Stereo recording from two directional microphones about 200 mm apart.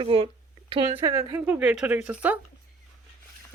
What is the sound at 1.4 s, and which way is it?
Speech, 5° right (ahead or behind).